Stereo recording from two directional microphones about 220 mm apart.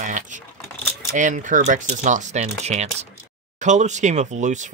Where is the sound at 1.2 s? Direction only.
35° right (ahead or behind).